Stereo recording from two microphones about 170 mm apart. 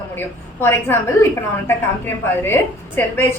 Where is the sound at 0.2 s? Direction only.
15° left (ahead or behind).